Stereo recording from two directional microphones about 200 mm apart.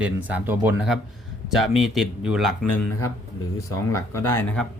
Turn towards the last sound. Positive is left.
turn(degrees=10)  # may be behind; listen again after turning